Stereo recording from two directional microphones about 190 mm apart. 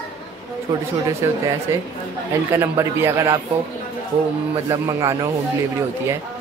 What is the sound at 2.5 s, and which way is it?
Speech, 15° right (ahead or behind).